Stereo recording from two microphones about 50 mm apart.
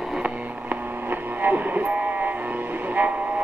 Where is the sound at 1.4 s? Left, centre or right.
Right.